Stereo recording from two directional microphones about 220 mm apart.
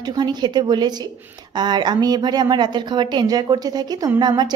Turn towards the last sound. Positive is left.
turn(degrees=-20)  # may be behind; listen again after turning